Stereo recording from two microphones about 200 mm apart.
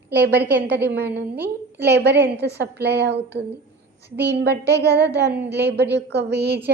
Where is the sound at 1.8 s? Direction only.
55° right (ahead or behind).